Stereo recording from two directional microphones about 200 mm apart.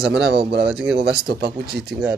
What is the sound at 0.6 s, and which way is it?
Speech, 5° right (ahead or behind).